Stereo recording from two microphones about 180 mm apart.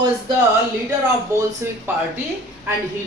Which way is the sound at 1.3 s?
15° right (ahead or behind).